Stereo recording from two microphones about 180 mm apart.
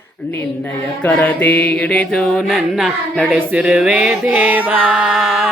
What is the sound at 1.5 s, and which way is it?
Music, 65° left (ahead or behind).